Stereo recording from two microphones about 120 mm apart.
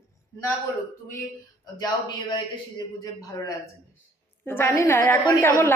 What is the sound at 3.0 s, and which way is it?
Speech, 30° left (ahead or behind).